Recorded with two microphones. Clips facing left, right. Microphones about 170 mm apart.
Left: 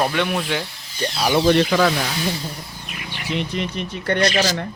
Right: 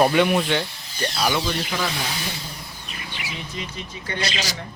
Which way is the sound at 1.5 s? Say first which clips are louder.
Left 11 dB; 75° left (ahead or behind).